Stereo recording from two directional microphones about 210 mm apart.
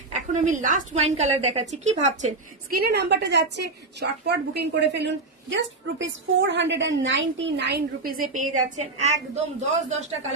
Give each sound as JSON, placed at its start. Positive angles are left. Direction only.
{"t": 0.1, "sound": "a woman's voice", "side_deg": -35}
{"t": 2.8, "sound": "a woman's voice", "side_deg": -50}